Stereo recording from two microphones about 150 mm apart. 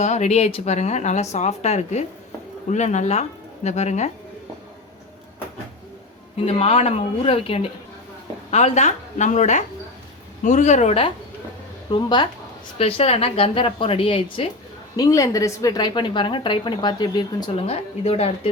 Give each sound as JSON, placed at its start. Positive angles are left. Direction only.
{"t": 0.0, "sound": "speech", "side_deg": 50}
{"t": 6.3, "sound": "a woman's voice", "side_deg": 45}
{"t": 11.9, "sound": "a woman's voice", "side_deg": 30}
{"t": 12.8, "sound": "a woman's voice", "side_deg": 40}
{"t": 14.9, "sound": "a woman's voice", "side_deg": 25}
{"t": 17.5, "sound": "speech", "side_deg": 45}